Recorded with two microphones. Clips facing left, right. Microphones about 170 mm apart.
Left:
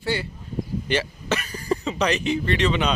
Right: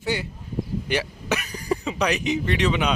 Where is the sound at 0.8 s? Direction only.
10° right (ahead or behind).